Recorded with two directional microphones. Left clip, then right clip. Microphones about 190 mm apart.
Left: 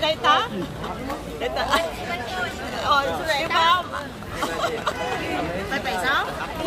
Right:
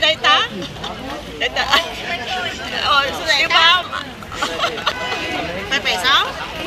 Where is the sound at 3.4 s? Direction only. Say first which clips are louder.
Right 7 dB; 30° left (ahead or behind).